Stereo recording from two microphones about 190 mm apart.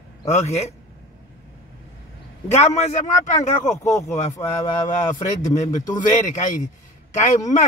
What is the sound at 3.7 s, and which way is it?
Speech, 15° left (ahead or behind).